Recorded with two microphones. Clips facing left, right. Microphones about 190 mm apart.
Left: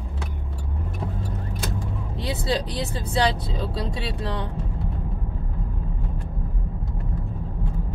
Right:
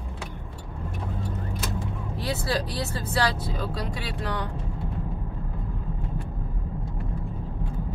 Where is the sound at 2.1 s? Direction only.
20° left (ahead or behind).